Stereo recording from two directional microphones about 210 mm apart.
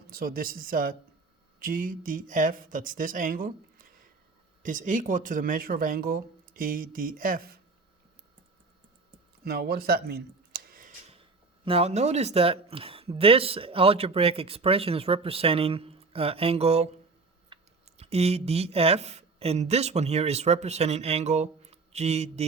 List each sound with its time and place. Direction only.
0.1 s speech: 45° right (ahead or behind)
9.4 s a sound: 50° right (ahead or behind)
11.6 s speech: 30° right (ahead or behind)